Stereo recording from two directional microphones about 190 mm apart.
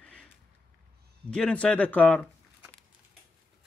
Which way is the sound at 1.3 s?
5° left (ahead or behind).